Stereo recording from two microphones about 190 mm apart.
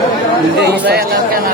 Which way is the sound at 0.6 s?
60° right (ahead or behind).